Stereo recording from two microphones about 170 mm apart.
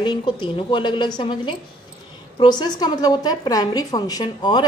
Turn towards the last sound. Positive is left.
turn(degrees=25)  # may be behind; listen again after turning